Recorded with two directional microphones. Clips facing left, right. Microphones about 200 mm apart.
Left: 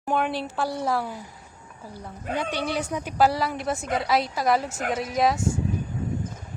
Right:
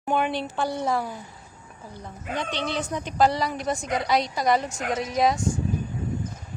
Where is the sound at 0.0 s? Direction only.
Centre (ahead or behind).